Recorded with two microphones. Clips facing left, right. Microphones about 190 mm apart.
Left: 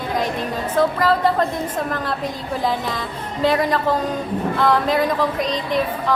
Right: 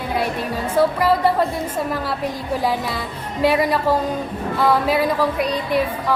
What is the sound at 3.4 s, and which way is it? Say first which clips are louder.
Speech: right 1 dB; 10° right (ahead or behind).